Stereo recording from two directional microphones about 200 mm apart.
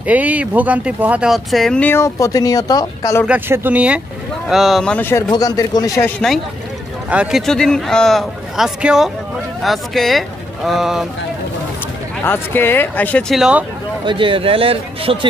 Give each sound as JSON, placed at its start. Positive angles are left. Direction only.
{"t": 0.0, "sound": "speech", "side_deg": -5}
{"t": 3.3, "sound": "speech", "side_deg": -10}
{"t": 7.1, "sound": "speech", "side_deg": -5}
{"t": 12.2, "sound": "speech", "side_deg": 10}
{"t": 14.0, "sound": "a man's voice", "side_deg": -25}